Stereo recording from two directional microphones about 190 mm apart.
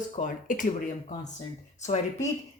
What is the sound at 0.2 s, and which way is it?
Speech, 45° left (ahead or behind).